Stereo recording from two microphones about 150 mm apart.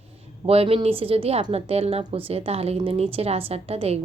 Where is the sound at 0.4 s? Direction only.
40° right (ahead or behind).